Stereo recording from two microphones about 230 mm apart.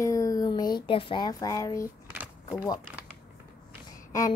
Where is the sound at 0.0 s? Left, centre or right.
Centre.